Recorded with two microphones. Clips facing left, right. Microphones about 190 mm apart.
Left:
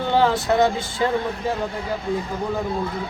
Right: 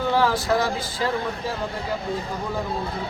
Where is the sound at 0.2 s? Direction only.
25° left (ahead or behind).